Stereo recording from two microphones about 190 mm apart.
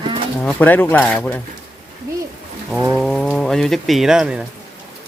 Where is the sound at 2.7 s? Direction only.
5° right (ahead or behind).